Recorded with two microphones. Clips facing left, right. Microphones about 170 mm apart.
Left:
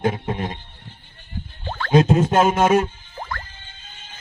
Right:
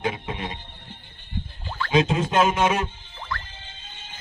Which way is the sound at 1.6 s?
60° left (ahead or behind).